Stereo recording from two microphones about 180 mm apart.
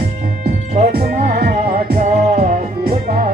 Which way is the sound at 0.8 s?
60° right (ahead or behind).